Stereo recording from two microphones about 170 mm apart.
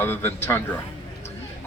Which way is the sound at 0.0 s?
15° left (ahead or behind).